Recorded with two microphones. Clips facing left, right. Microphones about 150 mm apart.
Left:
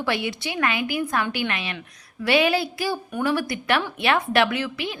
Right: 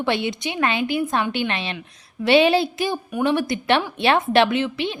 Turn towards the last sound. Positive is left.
turn(degrees=-25)  # may be behind; listen again after turning